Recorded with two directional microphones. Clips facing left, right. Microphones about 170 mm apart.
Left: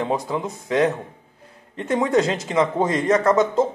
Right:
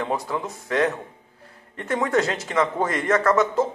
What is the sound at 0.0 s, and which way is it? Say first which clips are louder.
Speech: left 3 dB; 15° left (ahead or behind).